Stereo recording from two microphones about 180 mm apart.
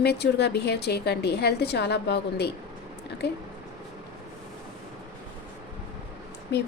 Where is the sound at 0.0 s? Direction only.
65° left (ahead or behind).